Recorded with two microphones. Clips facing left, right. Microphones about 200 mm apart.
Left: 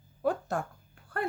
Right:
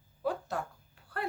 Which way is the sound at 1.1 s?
50° left (ahead or behind).